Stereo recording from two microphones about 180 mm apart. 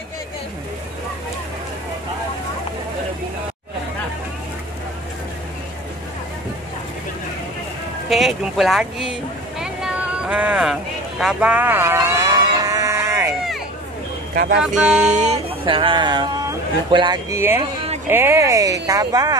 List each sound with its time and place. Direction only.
8.1 s speech: centre (ahead or behind)
9.6 s a sound: 5° right (ahead or behind)
14.3 s speech: 60° right (ahead or behind)
14.6 s speech: 5° right (ahead or behind)
15.0 s speech: 40° right (ahead or behind)
18.0 s speech: 10° right (ahead or behind)